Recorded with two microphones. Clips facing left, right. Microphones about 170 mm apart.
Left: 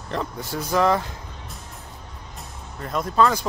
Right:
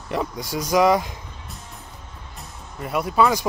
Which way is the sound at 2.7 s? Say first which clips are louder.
Right 1 dB; 10° right (ahead or behind).